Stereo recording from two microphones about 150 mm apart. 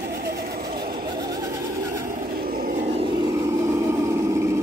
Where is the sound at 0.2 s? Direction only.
90° right.